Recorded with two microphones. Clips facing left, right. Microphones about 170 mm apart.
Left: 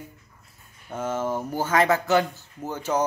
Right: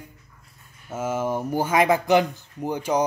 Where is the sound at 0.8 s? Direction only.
10° right (ahead or behind).